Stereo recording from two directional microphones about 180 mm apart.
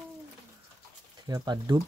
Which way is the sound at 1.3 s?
20° right (ahead or behind).